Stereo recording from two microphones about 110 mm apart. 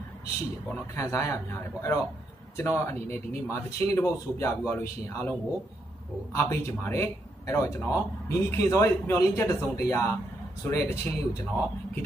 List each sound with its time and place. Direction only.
0.7 s speech: 20° left (ahead or behind)
6.3 s speech: 25° left (ahead or behind)